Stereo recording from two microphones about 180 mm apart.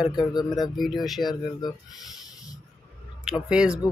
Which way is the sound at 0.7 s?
Centre (ahead or behind).